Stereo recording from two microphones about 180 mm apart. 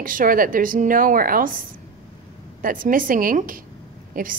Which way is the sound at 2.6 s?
50° right (ahead or behind).